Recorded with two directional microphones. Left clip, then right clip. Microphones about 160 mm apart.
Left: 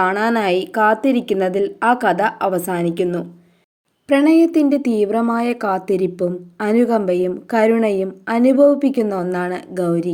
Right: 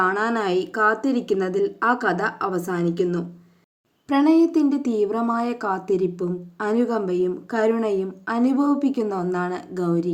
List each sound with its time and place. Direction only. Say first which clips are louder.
0.0 s a woman's voice: left 4 dB; 20° left (ahead or behind)